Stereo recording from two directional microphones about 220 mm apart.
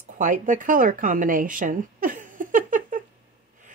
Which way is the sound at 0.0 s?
35° right (ahead or behind).